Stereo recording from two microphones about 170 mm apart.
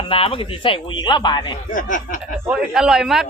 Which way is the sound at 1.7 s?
50° left (ahead or behind).